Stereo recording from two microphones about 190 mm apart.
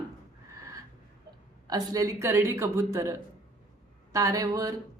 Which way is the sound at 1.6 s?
20° right (ahead or behind).